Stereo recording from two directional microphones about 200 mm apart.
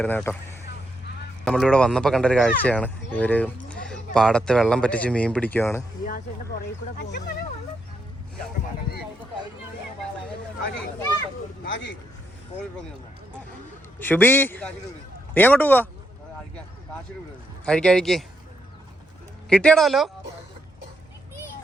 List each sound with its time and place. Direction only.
0.0 s a man's voice: 10° left (ahead or behind)
1.5 s speech: 5° left (ahead or behind)
6.1 s speech: 45° left (ahead or behind)
10.6 s a man's voice: 65° left (ahead or behind)
14.0 s a man's voice: 10° left (ahead or behind)
17.7 s speech: 5° left (ahead or behind)
19.5 s speech: 5° left (ahead or behind)